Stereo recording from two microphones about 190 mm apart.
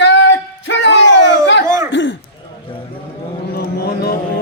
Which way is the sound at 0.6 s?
70° left (ahead or behind).